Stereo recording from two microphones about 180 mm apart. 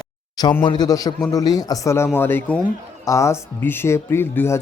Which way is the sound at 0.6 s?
25° left (ahead or behind).